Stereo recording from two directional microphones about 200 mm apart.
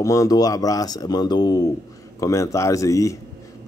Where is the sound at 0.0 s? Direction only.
15° left (ahead or behind).